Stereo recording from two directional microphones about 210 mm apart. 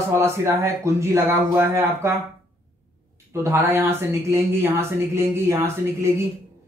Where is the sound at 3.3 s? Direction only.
10° right (ahead or behind).